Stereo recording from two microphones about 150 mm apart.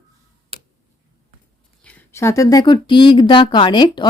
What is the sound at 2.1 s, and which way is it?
Speech, 20° left (ahead or behind).